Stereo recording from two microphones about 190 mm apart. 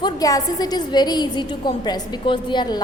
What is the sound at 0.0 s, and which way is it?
A woman's voice, 20° left (ahead or behind).